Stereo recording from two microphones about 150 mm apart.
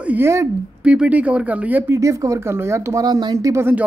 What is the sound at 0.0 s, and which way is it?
Speech, 15° right (ahead or behind).